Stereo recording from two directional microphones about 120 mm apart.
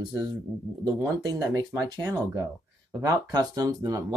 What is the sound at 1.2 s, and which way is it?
Speech, 30° right (ahead or behind).